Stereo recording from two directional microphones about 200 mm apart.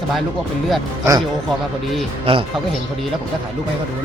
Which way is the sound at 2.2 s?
25° right (ahead or behind).